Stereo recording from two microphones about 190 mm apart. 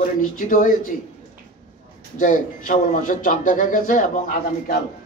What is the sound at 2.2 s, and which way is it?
A man's voice, 40° left (ahead or behind).